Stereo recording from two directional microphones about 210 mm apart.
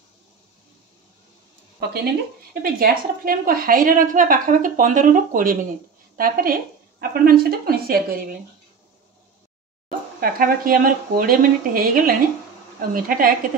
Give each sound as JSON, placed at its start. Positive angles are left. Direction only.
{"t": 1.8, "sound": "a woman's voice", "side_deg": -50}
{"t": 10.2, "sound": "a woman's voice", "side_deg": -45}